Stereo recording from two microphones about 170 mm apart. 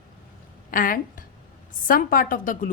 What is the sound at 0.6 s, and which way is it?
A woman's voice, 55° left (ahead or behind).